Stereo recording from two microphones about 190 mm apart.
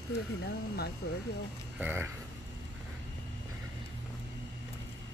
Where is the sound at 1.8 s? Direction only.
10° right (ahead or behind).